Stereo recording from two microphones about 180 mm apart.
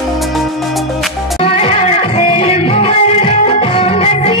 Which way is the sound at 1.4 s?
35° left (ahead or behind).